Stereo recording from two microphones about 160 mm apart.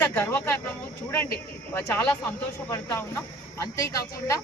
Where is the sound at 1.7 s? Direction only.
15° left (ahead or behind).